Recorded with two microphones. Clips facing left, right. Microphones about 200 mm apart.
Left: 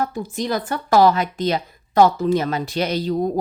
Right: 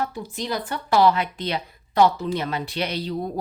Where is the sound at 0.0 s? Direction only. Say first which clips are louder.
Left 5 dB; 45° left (ahead or behind).